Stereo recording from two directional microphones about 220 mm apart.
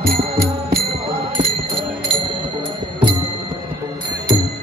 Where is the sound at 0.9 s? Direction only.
25° right (ahead or behind).